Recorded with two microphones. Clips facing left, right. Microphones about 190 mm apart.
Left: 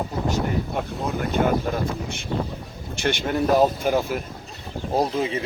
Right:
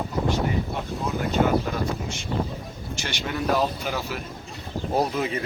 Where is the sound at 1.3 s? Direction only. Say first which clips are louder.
Even; 55° left (ahead or behind).